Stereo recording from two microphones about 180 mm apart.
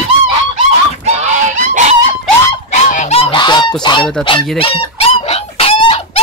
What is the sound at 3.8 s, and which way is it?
Speech, 25° left (ahead or behind).